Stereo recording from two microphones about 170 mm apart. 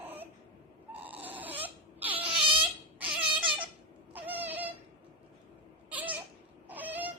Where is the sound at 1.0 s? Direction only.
10° right (ahead or behind).